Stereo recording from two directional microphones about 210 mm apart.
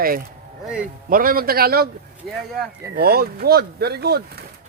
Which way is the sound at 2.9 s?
45° right (ahead or behind).